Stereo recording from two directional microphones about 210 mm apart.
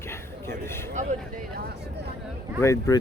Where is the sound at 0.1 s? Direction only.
10° left (ahead or behind).